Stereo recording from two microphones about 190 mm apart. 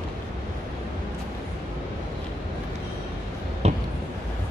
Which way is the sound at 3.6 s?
35° right (ahead or behind).